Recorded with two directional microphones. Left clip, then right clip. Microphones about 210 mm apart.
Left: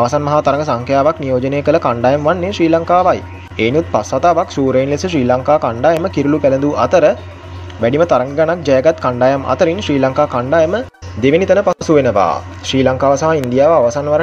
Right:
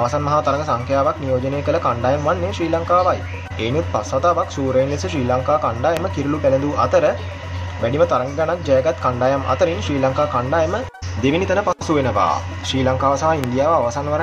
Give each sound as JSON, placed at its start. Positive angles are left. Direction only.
{"t": 0.0, "sound": "a man's voice", "side_deg": 30}